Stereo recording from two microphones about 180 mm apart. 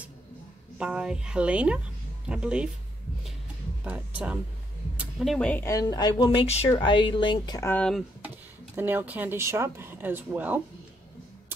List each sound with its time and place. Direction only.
0.7 s a woman's voice: 5° right (ahead or behind)
4.9 s a woman's voice: centre (ahead or behind); by 7.7 s 20° left (ahead or behind)
7.7 s a woman's voice: 5° left (ahead or behind)
8.7 s speech: 10° right (ahead or behind)